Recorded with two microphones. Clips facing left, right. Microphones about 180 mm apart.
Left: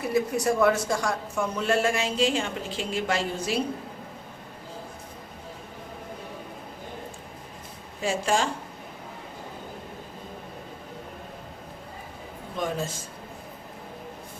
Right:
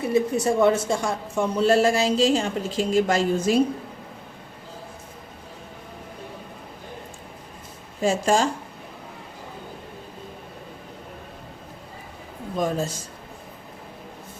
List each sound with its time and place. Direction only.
0.0 s speech: 25° right (ahead or behind); by 3.6 s 45° right (ahead or behind)
8.0 s speech: 40° right (ahead or behind)
12.5 s speech: 40° right (ahead or behind)